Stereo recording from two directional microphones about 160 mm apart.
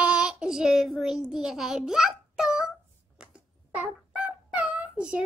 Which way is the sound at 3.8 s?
10° right (ahead or behind).